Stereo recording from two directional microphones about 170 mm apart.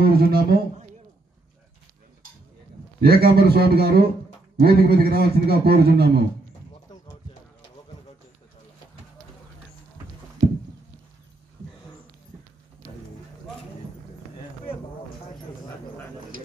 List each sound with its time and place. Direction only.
0.0 s a man's voice: 65° right (ahead or behind)
3.0 s a man's voice: 65° right (ahead or behind)